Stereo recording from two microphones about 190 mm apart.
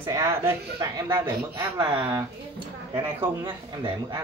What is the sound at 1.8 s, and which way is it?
Speech, 25° right (ahead or behind).